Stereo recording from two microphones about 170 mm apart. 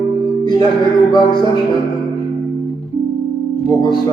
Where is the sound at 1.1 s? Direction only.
25° left (ahead or behind).